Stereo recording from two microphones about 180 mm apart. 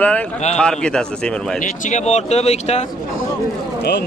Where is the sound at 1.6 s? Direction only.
40° left (ahead or behind).